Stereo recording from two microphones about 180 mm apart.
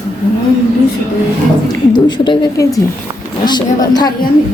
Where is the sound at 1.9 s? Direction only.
25° left (ahead or behind).